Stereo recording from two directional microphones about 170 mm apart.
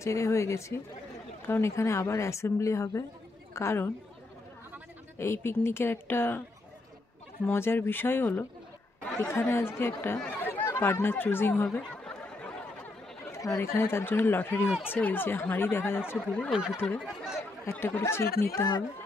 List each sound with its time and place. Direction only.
0.0 s a woman's voice: 15° left (ahead or behind)
5.2 s a woman's voice: 15° left (ahead or behind)
7.4 s a woman's voice: 15° left (ahead or behind)
12.0 s a sound: 5° left (ahead or behind)
13.3 s a woman's voice: 20° left (ahead or behind); by 16.7 s centre (ahead or behind)
16.7 s a woman's voice: 10° left (ahead or behind)
17.0 s speech: centre (ahead or behind)
17.7 s a woman's voice: 10° left (ahead or behind)